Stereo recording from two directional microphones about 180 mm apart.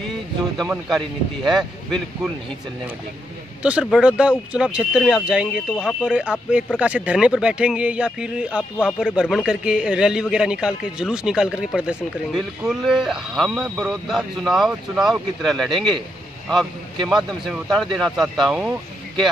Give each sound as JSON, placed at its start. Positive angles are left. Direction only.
{"t": 0.6, "sound": "speech", "side_deg": 0}
{"t": 3.6, "sound": "speech", "side_deg": -5}
{"t": 15.7, "sound": "a man's voice", "side_deg": -25}
{"t": 17.1, "sound": "speech", "side_deg": 0}